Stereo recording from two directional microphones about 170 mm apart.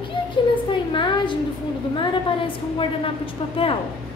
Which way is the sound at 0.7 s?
30° left (ahead or behind).